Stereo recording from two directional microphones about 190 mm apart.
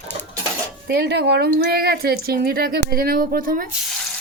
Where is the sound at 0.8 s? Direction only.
60° right (ahead or behind).